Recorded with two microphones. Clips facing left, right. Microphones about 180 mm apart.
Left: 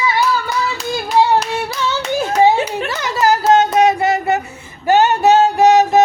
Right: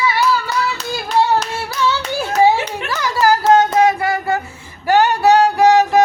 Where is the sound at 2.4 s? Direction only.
25° left (ahead or behind).